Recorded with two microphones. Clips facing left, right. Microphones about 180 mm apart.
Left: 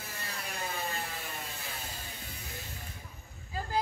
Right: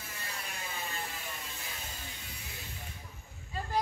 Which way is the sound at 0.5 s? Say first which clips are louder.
Left 7 dB; 40° left (ahead or behind).